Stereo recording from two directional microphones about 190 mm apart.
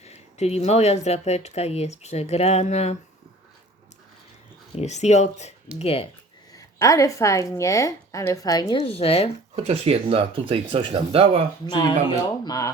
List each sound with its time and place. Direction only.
0.0 s speech: 35° left (ahead or behind)
4.7 s speech: 35° left (ahead or behind)
6.7 s a woman's voice: 15° left (ahead or behind)
8.8 s speech: 30° left (ahead or behind)
9.6 s speech: 35° right (ahead or behind)
11.6 s speech: 25° left (ahead or behind)